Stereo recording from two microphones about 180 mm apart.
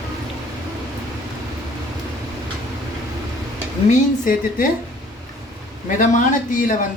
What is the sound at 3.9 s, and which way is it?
Speech, 50° left (ahead or behind).